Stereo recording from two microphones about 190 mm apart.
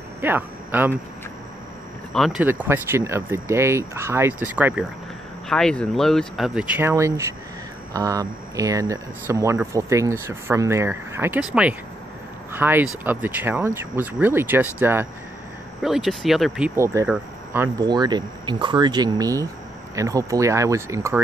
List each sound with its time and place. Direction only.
0.2 s speech: 10° right (ahead or behind)
2.1 s speech: centre (ahead or behind)
5.5 s speech: 5° left (ahead or behind)
17.8 s speech: 20° right (ahead or behind)